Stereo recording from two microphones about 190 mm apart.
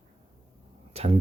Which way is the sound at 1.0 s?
35° right (ahead or behind).